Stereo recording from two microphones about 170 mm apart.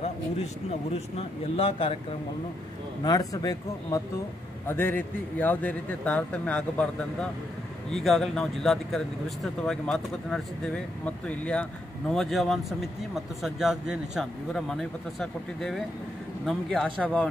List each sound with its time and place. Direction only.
0.7 s speech: 35° left (ahead or behind)
3.0 s a man's voice: 20° left (ahead or behind)